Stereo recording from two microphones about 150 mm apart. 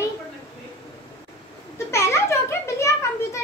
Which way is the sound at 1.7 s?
20° left (ahead or behind).